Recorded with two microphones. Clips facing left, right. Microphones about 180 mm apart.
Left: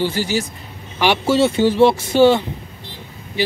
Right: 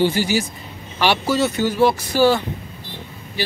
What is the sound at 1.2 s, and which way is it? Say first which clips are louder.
Speech: left 4 dB; 25° left (ahead or behind).